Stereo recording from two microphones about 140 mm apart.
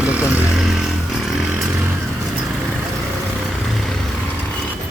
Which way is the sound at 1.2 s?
Centre (ahead or behind).